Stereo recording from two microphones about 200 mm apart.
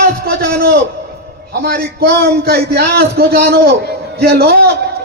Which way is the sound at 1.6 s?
50° right (ahead or behind).